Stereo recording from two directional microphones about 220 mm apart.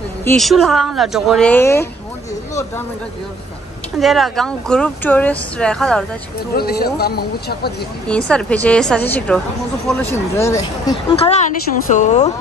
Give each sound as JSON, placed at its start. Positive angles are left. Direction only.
{"t": 0.4, "sound": "speech", "side_deg": 0}
{"t": 4.0, "sound": "speech", "side_deg": 0}
{"t": 6.5, "sound": "speech", "side_deg": 45}
{"t": 8.1, "sound": "speech", "side_deg": 5}
{"t": 11.1, "sound": "a woman's voice", "side_deg": 30}